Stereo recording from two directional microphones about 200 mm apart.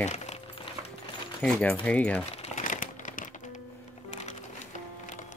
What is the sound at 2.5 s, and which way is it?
Crumpling, 40° left (ahead or behind).